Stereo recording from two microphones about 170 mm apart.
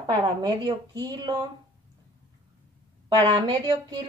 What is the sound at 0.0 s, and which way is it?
A woman's voice, 25° right (ahead or behind).